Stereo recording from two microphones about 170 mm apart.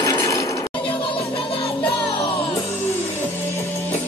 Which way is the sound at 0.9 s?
30° left (ahead or behind).